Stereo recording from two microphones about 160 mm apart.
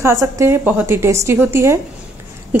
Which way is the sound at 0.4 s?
15° right (ahead or behind).